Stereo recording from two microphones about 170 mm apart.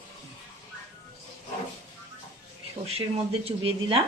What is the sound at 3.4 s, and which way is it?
Speech, 35° right (ahead or behind).